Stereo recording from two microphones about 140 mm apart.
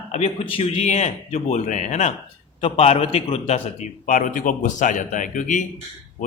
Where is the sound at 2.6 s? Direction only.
45° left (ahead or behind).